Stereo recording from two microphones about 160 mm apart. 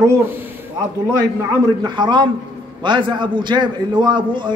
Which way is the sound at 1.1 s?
20° right (ahead or behind).